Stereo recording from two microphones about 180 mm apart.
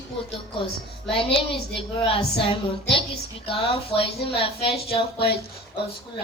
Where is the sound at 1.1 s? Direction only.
30° left (ahead or behind).